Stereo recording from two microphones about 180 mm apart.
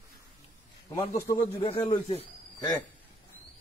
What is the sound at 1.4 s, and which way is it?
Speech, 30° left (ahead or behind).